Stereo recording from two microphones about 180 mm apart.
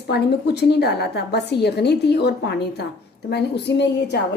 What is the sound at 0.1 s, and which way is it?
A woman's voice, 65° left (ahead or behind).